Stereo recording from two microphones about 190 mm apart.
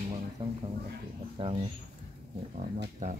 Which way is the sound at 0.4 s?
30° right (ahead or behind).